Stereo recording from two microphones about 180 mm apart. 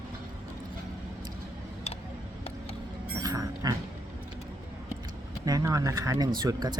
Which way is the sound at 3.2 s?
20° right (ahead or behind).